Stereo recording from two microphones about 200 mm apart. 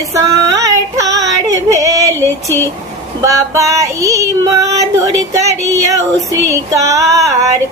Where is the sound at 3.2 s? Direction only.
15° right (ahead or behind).